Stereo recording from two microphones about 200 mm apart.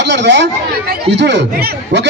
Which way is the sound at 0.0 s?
60° right (ahead or behind).